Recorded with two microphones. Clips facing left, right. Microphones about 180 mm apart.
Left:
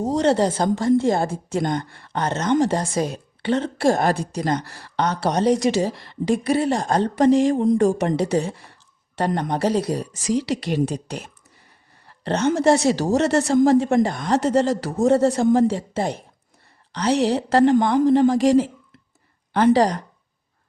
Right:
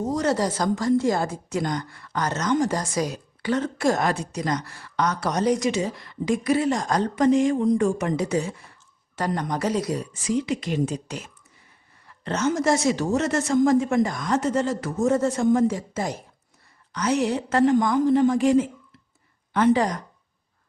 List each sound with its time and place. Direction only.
0.0 s a woman's voice: 30° left (ahead or behind)
10.5 s speech: 70° left (ahead or behind)
12.0 s a sound: 35° left (ahead or behind)
12.5 s speech: 35° left (ahead or behind)